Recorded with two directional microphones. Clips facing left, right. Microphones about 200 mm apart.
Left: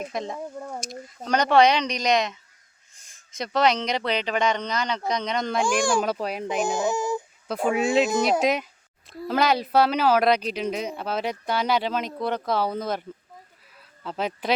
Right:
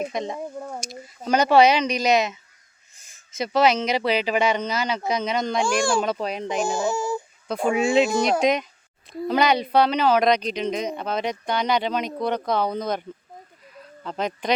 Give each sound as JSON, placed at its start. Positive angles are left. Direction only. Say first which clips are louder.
{"t": 0.0, "sound": "speech", "louder": "right 3 dB", "side_deg": 0}
{"t": 6.7, "sound": "speech", "louder": "even", "side_deg": 20}
{"t": 7.4, "sound": "speech", "louder": "right 2 dB", "side_deg": 5}